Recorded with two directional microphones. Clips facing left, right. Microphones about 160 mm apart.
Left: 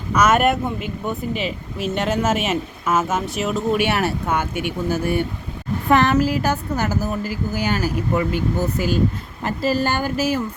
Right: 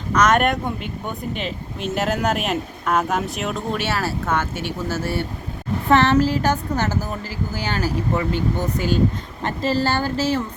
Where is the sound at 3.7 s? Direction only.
20° left (ahead or behind).